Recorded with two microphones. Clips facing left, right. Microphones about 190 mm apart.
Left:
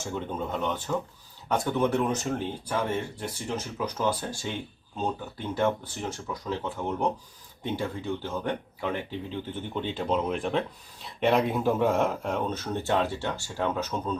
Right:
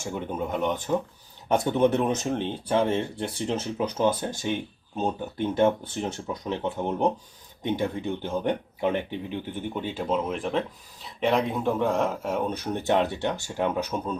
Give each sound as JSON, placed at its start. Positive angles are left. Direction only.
{"t": 0.0, "sound": "speech", "side_deg": -10}